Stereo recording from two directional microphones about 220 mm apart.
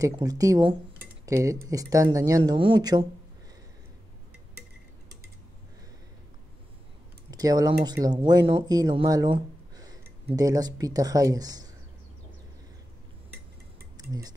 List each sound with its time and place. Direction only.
0.0 s speech: 15° right (ahead or behind)
7.2 s speech: 15° right (ahead or behind)
13.9 s dishes: 15° right (ahead or behind)